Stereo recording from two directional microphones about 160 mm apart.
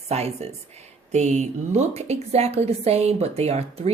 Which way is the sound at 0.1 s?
40° right (ahead or behind).